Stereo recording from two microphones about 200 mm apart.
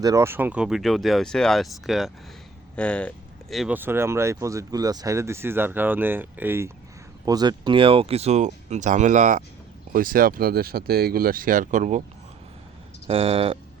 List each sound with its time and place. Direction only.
0.0 s speech: 15° right (ahead or behind); by 12.0 s 40° right (ahead or behind)
13.1 s speech: 30° right (ahead or behind)